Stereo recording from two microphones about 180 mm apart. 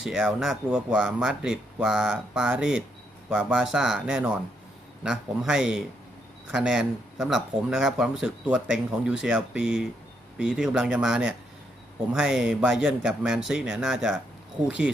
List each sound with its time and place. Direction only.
0.0 s speech: 5° right (ahead or behind)